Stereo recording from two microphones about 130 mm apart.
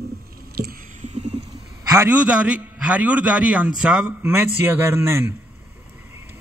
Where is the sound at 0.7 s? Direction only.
70° right (ahead or behind).